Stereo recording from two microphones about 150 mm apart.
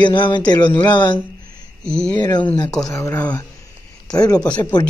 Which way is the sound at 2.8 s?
20° left (ahead or behind).